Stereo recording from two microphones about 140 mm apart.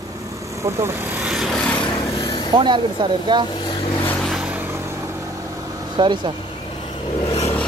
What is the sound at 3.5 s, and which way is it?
Vehicle, 35° left (ahead or behind).